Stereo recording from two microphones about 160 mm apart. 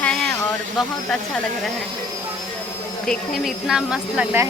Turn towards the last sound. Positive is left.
turn(degrees=-5)  # may be behind; listen again after turning